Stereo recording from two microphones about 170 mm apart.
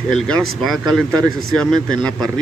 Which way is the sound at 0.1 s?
Centre (ahead or behind).